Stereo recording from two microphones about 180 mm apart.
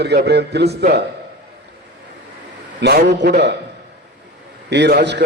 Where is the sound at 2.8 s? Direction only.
70° right (ahead or behind).